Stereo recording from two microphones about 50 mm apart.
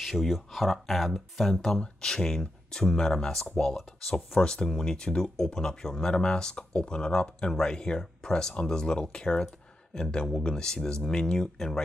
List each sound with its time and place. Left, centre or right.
0.0 s speech: centre